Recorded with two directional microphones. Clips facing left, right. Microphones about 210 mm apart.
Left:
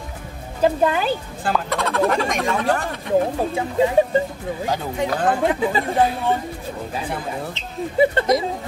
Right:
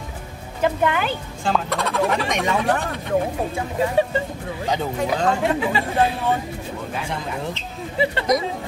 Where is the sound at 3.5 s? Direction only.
20° left (ahead or behind).